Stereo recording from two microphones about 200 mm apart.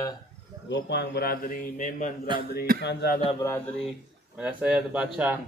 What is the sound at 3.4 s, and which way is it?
Speech, 10° left (ahead or behind).